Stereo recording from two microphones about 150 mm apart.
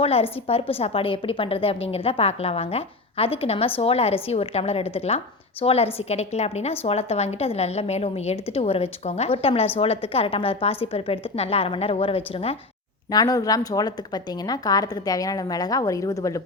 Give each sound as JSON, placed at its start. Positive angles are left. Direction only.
{"t": 0.0, "sound": "a woman's voice", "side_deg": 40}
{"t": 13.1, "sound": "a woman's voice", "side_deg": 25}